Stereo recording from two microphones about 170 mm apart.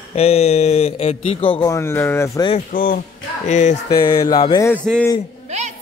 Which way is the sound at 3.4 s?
45° left (ahead or behind).